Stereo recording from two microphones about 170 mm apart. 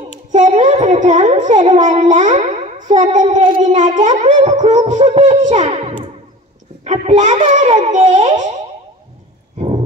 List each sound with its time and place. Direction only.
0.3 s a child's voice: 45° right (ahead or behind)